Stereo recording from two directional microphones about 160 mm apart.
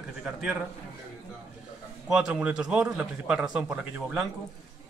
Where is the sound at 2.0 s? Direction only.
5° right (ahead or behind).